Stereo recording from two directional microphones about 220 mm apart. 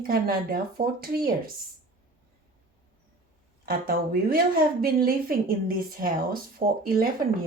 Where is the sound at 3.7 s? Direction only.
45° right (ahead or behind).